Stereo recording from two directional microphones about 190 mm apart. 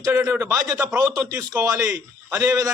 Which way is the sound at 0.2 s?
15° right (ahead or behind).